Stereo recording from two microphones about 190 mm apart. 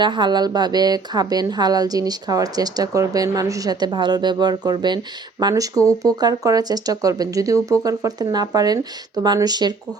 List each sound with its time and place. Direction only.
0.0 s a woman's voice: 25° right (ahead or behind)